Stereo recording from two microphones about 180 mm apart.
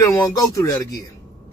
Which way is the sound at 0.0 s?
20° left (ahead or behind).